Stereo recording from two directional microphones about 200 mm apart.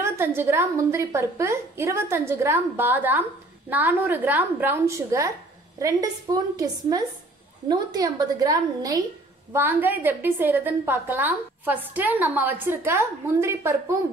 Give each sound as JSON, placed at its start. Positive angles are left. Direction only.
{"t": 0.0, "sound": "a woman's voice", "side_deg": -10}